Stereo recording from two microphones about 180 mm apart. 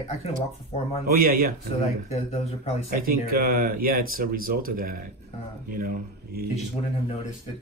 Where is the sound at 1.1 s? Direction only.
55° right (ahead or behind).